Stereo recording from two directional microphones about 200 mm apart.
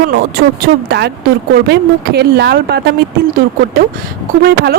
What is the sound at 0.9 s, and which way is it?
Speech, 55° right (ahead or behind).